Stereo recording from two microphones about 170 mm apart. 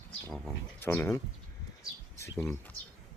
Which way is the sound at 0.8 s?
15° left (ahead or behind).